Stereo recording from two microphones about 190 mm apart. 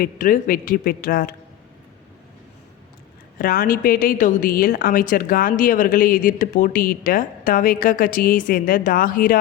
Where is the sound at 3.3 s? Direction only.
50° left (ahead or behind).